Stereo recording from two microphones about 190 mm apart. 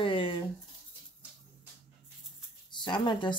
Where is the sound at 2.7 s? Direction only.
25° left (ahead or behind).